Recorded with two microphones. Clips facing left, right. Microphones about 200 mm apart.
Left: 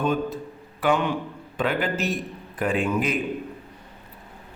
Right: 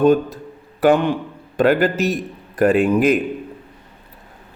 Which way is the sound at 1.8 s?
40° right (ahead or behind).